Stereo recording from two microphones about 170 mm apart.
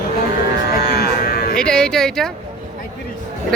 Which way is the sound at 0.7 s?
65° left (ahead or behind).